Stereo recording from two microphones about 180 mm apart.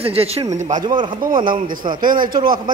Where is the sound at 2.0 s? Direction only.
50° right (ahead or behind).